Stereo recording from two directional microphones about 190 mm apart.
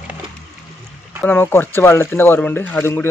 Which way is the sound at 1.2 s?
10° left (ahead or behind).